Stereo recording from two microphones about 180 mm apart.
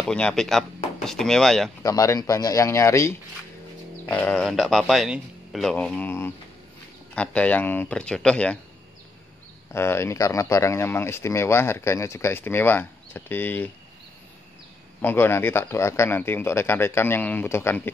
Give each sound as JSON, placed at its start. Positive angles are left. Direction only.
{"t": 0.0, "sound": "a man's voice", "side_deg": 5}
{"t": 1.8, "sound": "a man's voice", "side_deg": 15}
{"t": 9.7, "sound": "speech", "side_deg": 15}
{"t": 15.0, "sound": "speech", "side_deg": 10}